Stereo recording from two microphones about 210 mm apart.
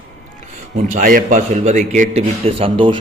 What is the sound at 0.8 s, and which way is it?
A man's voice, 40° right (ahead or behind).